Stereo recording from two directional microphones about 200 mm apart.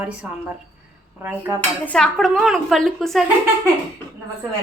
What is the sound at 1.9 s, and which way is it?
A woman's voice, 5° left (ahead or behind).